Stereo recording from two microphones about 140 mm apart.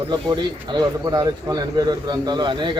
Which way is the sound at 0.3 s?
30° right (ahead or behind).